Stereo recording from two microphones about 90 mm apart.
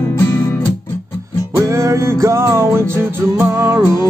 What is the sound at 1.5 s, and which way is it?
Music, 35° right (ahead or behind).